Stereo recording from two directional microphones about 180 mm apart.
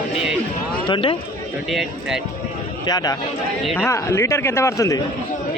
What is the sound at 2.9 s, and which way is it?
A man's voice, 20° left (ahead or behind).